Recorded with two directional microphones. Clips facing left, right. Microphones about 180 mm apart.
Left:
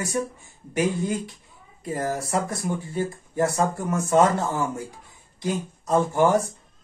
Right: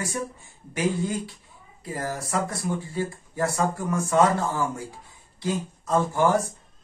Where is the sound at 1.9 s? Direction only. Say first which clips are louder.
Left 3 dB; 20° left (ahead or behind).